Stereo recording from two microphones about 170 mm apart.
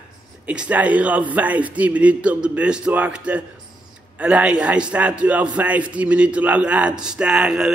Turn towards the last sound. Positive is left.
turn(degrees=-5)  # may be behind; listen again after turning